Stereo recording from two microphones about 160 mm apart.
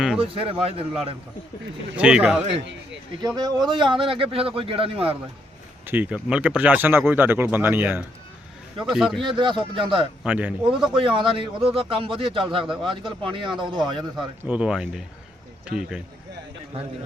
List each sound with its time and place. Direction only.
0.2 s a man's voice: 35° right (ahead or behind)
2.0 s speech: 10° right (ahead or behind)
3.2 s a man's voice: 25° right (ahead or behind)
5.8 s speech: 10° right (ahead or behind)
9.2 s a man's voice: 30° right (ahead or behind)
10.2 s speech: 10° right (ahead or behind)
10.9 s a man's voice: 35° right (ahead or behind)
14.4 s speech: 10° right (ahead or behind)